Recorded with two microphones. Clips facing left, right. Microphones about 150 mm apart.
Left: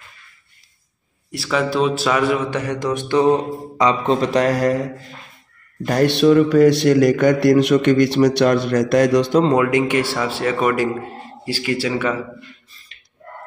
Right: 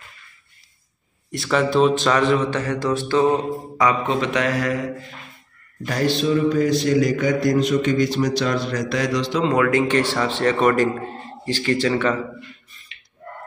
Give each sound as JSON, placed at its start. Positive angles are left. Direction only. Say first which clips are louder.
{"t": 1.3, "sound": "mantra", "louder": "right 1 dB", "side_deg": 0}
{"t": 4.1, "sound": "speech", "louder": "left 4 dB", "side_deg": 35}
{"t": 5.9, "sound": "speech", "louder": "left 6 dB", "side_deg": 60}
{"t": 9.4, "sound": "mantra", "louder": "left 3 dB", "side_deg": 25}